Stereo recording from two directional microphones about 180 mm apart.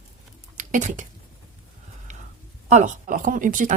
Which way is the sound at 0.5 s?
45° right (ahead or behind).